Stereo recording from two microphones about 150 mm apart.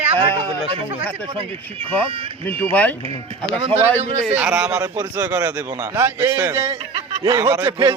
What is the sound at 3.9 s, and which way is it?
Speech, 50° right (ahead or behind).